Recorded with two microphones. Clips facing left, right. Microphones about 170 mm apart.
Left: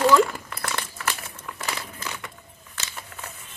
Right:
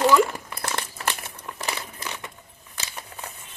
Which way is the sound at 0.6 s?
25° right (ahead or behind).